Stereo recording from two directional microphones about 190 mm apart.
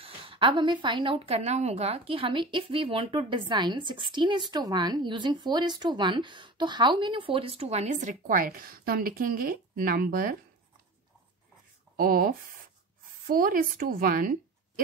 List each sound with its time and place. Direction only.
0.0 s a woman's voice: 30° right (ahead or behind); by 10.3 s 50° right (ahead or behind)
12.0 s speech: 50° right (ahead or behind)